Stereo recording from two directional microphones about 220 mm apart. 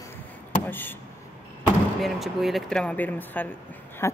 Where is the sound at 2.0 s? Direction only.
Centre (ahead or behind).